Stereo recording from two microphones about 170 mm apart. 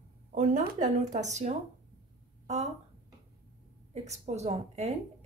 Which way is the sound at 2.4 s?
40° right (ahead or behind).